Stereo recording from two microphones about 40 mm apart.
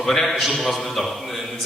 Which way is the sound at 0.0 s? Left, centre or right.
Centre.